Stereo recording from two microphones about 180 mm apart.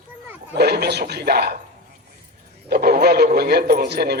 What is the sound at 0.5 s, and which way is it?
A man's voice, 65° right (ahead or behind).